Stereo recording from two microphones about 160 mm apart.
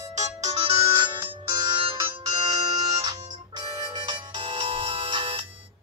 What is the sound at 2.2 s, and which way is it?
Music, 25° right (ahead or behind).